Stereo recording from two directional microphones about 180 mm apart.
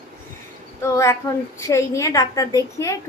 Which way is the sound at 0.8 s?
15° left (ahead or behind).